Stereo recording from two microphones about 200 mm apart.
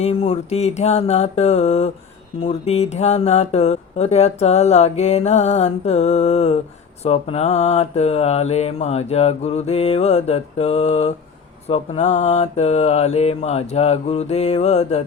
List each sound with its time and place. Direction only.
0.0 s speech: 30° left (ahead or behind)